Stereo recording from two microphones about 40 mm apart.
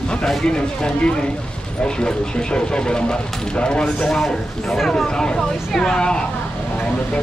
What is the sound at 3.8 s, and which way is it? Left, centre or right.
Speech, centre.